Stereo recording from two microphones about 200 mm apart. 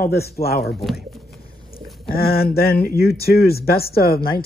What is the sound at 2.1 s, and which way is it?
Speech, 50° left (ahead or behind).